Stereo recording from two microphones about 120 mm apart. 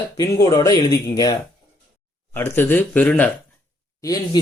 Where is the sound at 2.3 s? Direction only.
20° left (ahead or behind).